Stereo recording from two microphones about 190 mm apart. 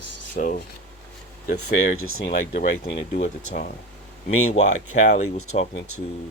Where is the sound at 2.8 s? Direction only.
30° left (ahead or behind).